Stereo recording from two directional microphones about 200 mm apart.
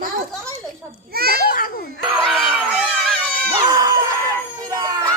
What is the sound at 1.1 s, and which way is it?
Speech, 50° right (ahead or behind).